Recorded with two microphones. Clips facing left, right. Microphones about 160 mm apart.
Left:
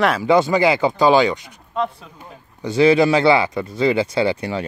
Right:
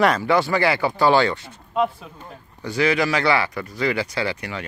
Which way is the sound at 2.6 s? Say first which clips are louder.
Left 7 dB; 25° left (ahead or behind).